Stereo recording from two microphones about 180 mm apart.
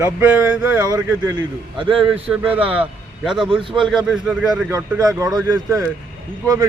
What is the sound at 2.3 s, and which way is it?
Speech, 5° right (ahead or behind).